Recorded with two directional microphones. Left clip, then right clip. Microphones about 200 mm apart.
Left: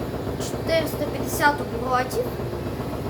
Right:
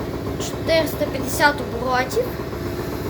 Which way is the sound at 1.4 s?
20° right (ahead or behind).